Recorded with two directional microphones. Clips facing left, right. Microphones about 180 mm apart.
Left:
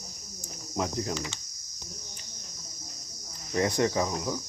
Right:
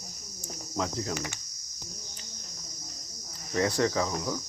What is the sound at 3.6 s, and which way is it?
Cricket, 20° left (ahead or behind).